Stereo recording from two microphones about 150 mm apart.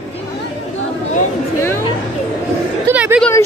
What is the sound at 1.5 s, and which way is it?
Speech, 15° left (ahead or behind).